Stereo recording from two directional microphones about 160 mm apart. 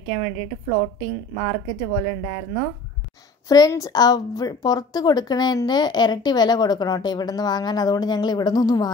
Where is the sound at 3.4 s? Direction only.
25° left (ahead or behind).